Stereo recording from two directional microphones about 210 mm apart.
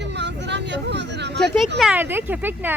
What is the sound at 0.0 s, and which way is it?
Vehicle, 55° right (ahead or behind).